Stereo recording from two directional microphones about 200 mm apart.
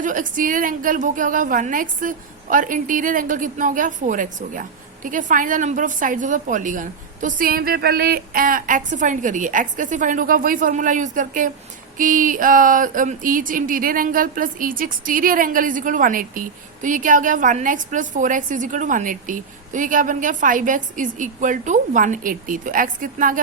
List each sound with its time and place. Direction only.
0.0 s speech: 40° right (ahead or behind)